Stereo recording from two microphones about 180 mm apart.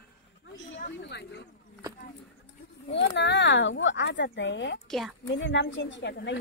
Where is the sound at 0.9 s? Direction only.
75° left (ahead or behind).